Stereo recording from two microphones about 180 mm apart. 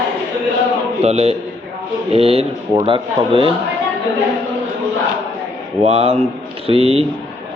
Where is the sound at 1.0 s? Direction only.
35° right (ahead or behind).